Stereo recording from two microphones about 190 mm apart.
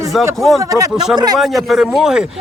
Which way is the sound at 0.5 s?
20° right (ahead or behind).